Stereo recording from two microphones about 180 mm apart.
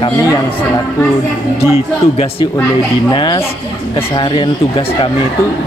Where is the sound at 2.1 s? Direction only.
35° left (ahead or behind).